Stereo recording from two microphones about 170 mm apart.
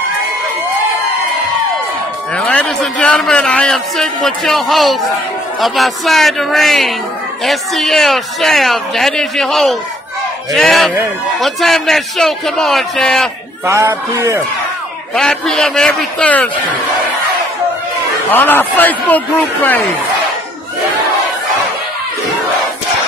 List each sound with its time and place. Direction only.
2.3 s a man's voice: 5° left (ahead or behind)
13.7 s speech: 15° right (ahead or behind)
15.1 s a man's voice: 5° left (ahead or behind)
18.3 s a man's voice: 10° left (ahead or behind)